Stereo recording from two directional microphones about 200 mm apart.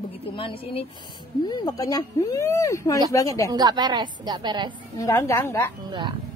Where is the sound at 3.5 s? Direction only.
20° right (ahead or behind).